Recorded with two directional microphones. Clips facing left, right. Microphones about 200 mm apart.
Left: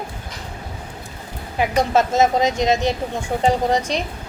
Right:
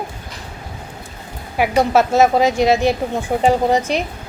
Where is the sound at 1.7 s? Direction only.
10° right (ahead or behind).